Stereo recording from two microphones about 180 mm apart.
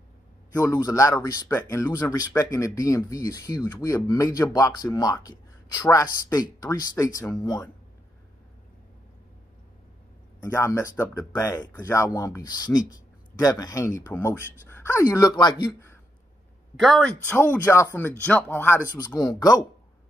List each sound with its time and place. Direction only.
0.6 s speech: 15° left (ahead or behind)
10.4 s speech: 15° left (ahead or behind)
16.8 s speech: 5° left (ahead or behind); by 19.5 s 20° left (ahead or behind)